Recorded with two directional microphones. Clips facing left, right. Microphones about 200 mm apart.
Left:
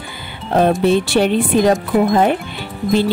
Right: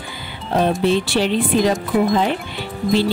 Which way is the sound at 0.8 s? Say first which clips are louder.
Left 3 dB; 55° left (ahead or behind).